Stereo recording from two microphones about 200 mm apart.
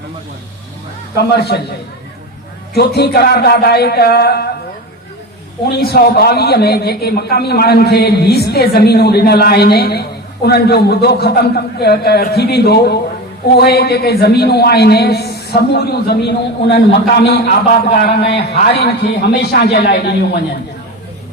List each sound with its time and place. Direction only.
1.1 s a man's voice: 55° left (ahead or behind)
2.7 s a man's voice: 55° left (ahead or behind)
5.7 s a man's voice: 55° left (ahead or behind)